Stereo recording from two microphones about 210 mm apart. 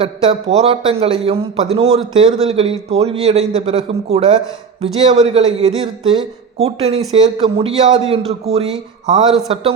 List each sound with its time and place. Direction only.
0.0 s speech: 25° right (ahead or behind)